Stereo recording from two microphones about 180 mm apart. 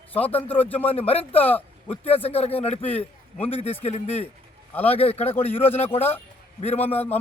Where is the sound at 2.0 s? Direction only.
35° left (ahead or behind).